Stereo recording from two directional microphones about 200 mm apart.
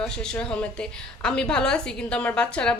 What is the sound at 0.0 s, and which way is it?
Speech, 5° left (ahead or behind).